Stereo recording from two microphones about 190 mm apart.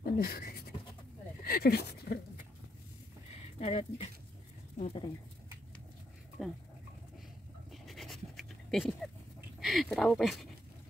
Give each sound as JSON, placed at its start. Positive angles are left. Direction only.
{"t": 0.2, "sound": "speech", "side_deg": 55}
{"t": 3.5, "sound": "speech", "side_deg": 30}
{"t": 6.4, "sound": "speech", "side_deg": 0}
{"t": 7.7, "sound": "pant", "side_deg": 0}
{"t": 9.6, "sound": "a sound", "side_deg": 0}